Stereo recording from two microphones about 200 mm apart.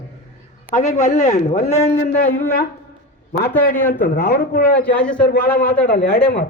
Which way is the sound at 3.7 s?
10° left (ahead or behind).